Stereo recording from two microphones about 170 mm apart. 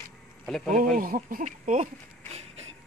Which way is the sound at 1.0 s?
55° right (ahead or behind).